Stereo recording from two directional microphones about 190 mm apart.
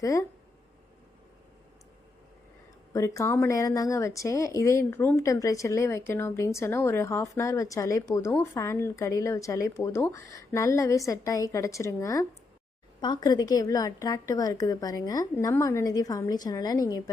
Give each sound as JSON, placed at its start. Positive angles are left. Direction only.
{"t": 0.0, "sound": "speech", "side_deg": 15}
{"t": 2.9, "sound": "speech", "side_deg": 15}
{"t": 13.2, "sound": "a woman's voice", "side_deg": 20}